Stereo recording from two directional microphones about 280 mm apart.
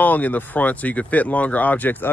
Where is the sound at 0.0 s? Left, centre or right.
Centre.